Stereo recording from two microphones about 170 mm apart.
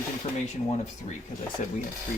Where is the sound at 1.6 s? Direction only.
50° left (ahead or behind).